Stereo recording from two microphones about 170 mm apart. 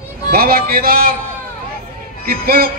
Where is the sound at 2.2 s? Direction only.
65° right (ahead or behind).